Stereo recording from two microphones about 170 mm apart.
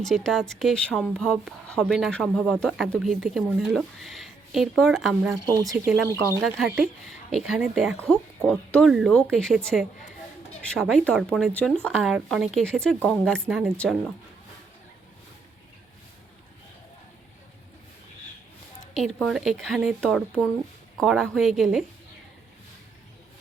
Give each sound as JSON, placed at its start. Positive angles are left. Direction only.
{"t": 0.0, "sound": "speech", "side_deg": 0}
{"t": 5.6, "sound": "speech", "side_deg": -15}
{"t": 6.4, "sound": "speech", "side_deg": 0}
{"t": 18.9, "sound": "speech", "side_deg": 0}